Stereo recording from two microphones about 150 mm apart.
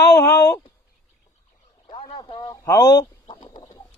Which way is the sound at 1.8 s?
40° left (ahead or behind).